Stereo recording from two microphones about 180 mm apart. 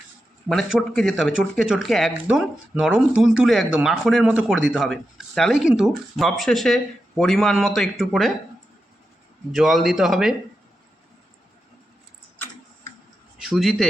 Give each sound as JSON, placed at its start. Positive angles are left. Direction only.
{"t": 0.4, "sound": "speech", "side_deg": 0}
{"t": 9.5, "sound": "speech", "side_deg": 0}
{"t": 13.4, "sound": "speech", "side_deg": 0}